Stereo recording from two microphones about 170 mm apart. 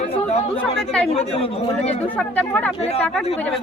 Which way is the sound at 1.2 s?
35° left (ahead or behind).